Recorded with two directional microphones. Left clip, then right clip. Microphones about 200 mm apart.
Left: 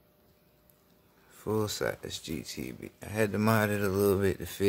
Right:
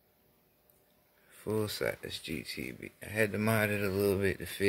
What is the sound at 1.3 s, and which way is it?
Speech, centre (ahead or behind).